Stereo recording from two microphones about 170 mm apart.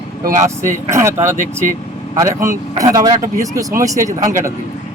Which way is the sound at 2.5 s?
20° right (ahead or behind).